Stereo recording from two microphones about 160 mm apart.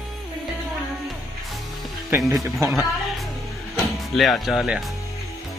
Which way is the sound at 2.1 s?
20° right (ahead or behind).